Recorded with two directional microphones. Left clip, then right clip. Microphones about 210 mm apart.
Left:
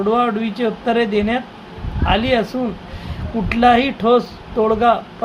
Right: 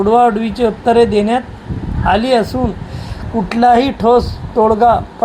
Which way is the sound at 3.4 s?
15° right (ahead or behind).